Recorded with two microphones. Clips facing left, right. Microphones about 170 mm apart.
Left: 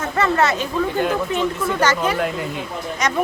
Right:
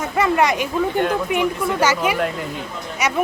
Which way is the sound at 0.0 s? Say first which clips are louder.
Right 1 dB; 10° right (ahead or behind).